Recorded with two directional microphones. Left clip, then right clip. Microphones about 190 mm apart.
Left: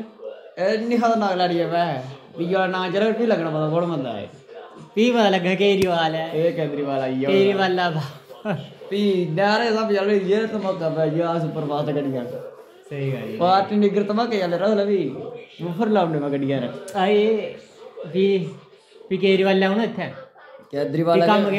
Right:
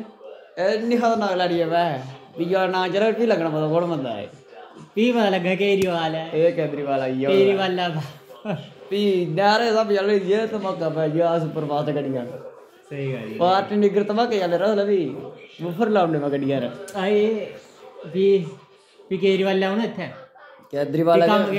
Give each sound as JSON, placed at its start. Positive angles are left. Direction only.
{"t": 0.6, "sound": "a man's voice", "side_deg": -20}
{"t": 4.9, "sound": "speech", "side_deg": 5}
{"t": 6.3, "sound": "a man's voice", "side_deg": -15}
{"t": 7.2, "sound": "a man's voice", "side_deg": 10}
{"t": 8.9, "sound": "a man's voice", "side_deg": -25}
{"t": 12.9, "sound": "speech", "side_deg": 10}
{"t": 13.4, "sound": "a man's voice", "side_deg": -20}
{"t": 16.8, "sound": "speech", "side_deg": 15}
{"t": 20.7, "sound": "a man's voice", "side_deg": -20}